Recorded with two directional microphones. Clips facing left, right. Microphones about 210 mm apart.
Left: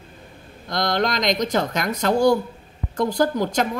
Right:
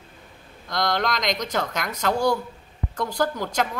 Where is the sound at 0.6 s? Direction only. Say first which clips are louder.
Left 3 dB; 20° left (ahead or behind).